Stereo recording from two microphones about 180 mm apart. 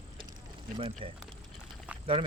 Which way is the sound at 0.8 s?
30° right (ahead or behind).